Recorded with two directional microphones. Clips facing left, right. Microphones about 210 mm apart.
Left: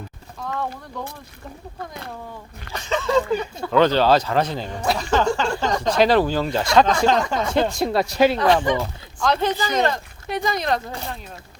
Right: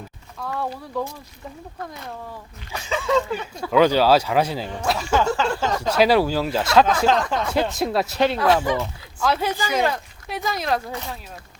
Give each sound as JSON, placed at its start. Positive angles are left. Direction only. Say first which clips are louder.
{"t": 0.9, "sound": "speech", "louder": "right 7 dB", "side_deg": -5}
{"t": 2.7, "sound": "speech", "louder": "left 1 dB", "side_deg": -10}